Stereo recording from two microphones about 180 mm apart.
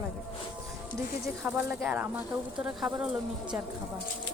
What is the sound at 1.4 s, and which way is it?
Speech, 5° right (ahead or behind).